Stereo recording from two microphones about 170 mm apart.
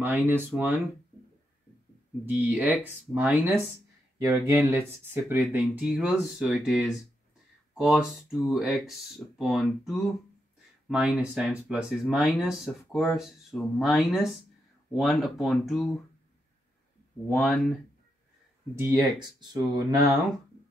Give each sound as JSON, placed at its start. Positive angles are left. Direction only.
{"t": 0.0, "sound": "speech", "side_deg": -10}
{"t": 2.2, "sound": "speech", "side_deg": -10}
{"t": 4.2, "sound": "speech", "side_deg": -20}
{"t": 17.3, "sound": "speech", "side_deg": 0}
{"t": 18.8, "sound": "speech", "side_deg": -20}